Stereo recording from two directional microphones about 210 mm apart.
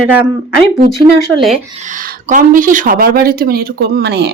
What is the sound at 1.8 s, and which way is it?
Speech, 35° right (ahead or behind).